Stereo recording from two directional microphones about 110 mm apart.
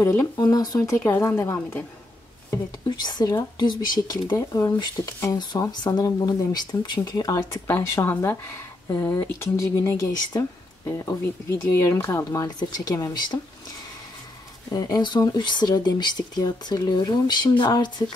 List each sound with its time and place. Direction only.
0.0 s speech: 20° left (ahead or behind)
0.4 s speech: 35° left (ahead or behind)
2.5 s speech: 40° left (ahead or behind)
4.4 s speech: 25° left (ahead or behind)
14.7 s speech: 40° left (ahead or behind)